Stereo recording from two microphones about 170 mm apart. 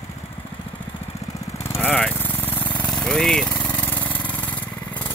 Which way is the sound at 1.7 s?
10° left (ahead or behind).